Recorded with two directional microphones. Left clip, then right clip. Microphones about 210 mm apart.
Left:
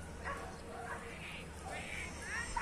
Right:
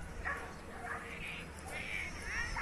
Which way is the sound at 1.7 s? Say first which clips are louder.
Right 5 dB; 40° left (ahead or behind).